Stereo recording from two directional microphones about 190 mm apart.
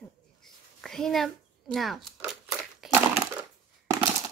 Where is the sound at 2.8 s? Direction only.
Centre (ahead or behind).